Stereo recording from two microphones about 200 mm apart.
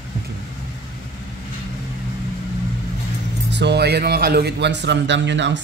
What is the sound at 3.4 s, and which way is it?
Speech, 60° right (ahead or behind).